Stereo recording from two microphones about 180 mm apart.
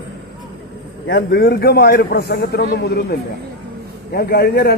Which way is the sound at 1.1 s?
65° left (ahead or behind).